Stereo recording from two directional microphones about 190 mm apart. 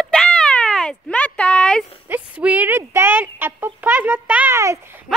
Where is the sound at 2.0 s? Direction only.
10° right (ahead or behind).